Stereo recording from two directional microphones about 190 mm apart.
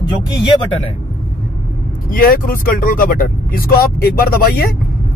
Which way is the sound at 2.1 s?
50° left (ahead or behind).